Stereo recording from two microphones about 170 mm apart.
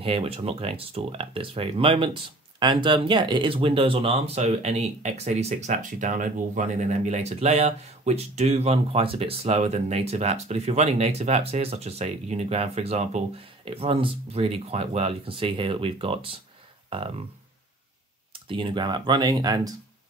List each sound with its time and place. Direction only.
0.0 s speech: 35° right (ahead or behind)
18.3 s speech: 30° right (ahead or behind)